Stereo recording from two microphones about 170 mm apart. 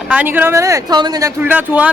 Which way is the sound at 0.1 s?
10° right (ahead or behind).